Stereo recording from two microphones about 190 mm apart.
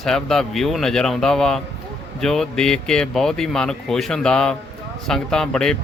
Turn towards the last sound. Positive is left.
turn(degrees=5)  # may be behind; listen again after turning